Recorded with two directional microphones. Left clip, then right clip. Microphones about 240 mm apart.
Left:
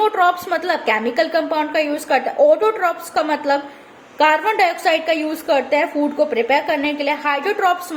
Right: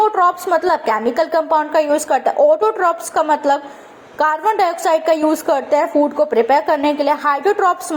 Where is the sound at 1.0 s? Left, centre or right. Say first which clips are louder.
Right 2 dB; centre.